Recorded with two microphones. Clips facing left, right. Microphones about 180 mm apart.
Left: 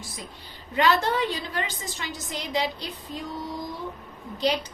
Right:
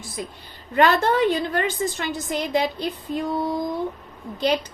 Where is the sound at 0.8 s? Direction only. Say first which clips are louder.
Right 5 dB; 55° right (ahead or behind).